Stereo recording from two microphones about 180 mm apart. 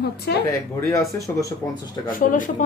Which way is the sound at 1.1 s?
20° left (ahead or behind).